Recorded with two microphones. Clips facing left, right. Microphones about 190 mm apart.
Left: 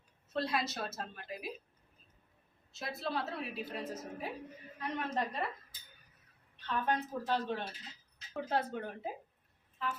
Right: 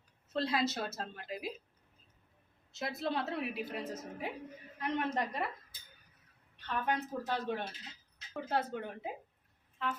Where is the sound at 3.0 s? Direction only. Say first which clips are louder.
Right 2 dB; 20° right (ahead or behind).